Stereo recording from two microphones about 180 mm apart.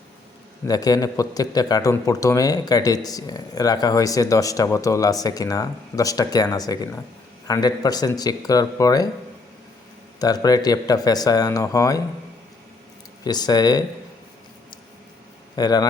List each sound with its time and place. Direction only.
0.7 s a man's voice: 20° left (ahead or behind)
10.2 s a man's voice: 20° left (ahead or behind)
13.2 s a man's voice: 20° left (ahead or behind)
15.5 s a man's voice: 20° left (ahead or behind)